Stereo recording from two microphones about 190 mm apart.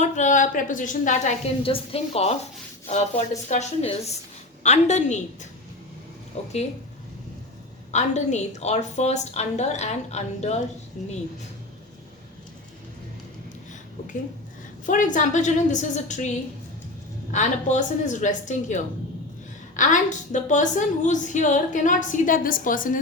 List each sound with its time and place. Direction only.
0.0 s a woman's voice: 40° left (ahead or behind)
7.9 s a woman's voice: 40° left (ahead or behind)
14.8 s a woman's voice: 45° left (ahead or behind)
17.3 s a woman's voice: 40° left (ahead or behind)